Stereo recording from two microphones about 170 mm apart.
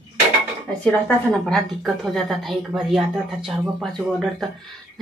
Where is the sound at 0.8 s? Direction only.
5° left (ahead or behind).